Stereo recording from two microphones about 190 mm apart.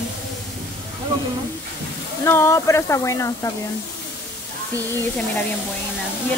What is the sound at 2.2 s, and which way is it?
Speech, 15° left (ahead or behind).